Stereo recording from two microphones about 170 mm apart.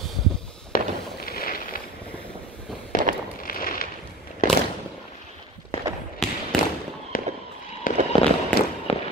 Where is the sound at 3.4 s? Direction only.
55° left (ahead or behind).